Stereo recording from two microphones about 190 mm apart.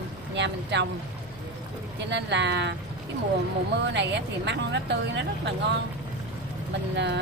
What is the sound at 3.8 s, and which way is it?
Speech, 65° right (ahead or behind).